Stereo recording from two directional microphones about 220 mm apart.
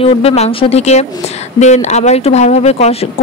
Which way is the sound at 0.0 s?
25° left (ahead or behind).